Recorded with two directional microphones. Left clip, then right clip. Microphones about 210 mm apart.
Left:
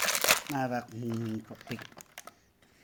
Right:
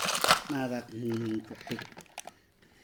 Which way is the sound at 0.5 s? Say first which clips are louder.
Left 2 dB; 50° left (ahead or behind).